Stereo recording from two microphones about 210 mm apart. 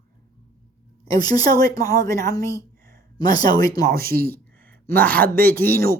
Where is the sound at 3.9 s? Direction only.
45° right (ahead or behind).